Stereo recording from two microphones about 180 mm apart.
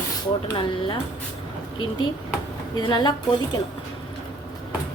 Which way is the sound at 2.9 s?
25° left (ahead or behind).